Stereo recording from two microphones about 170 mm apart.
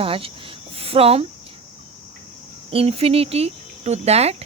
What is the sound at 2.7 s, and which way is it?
Speech, 35° right (ahead or behind).